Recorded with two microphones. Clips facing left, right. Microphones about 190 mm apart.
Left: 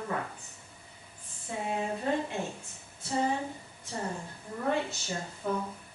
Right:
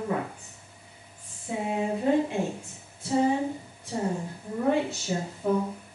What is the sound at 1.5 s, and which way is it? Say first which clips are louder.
Speech: right 5 dB; 10° right (ahead or behind).